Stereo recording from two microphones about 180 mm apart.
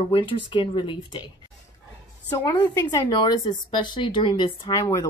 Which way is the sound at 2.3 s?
15° left (ahead or behind).